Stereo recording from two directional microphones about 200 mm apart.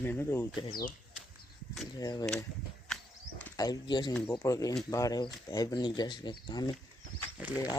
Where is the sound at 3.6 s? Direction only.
20° left (ahead or behind).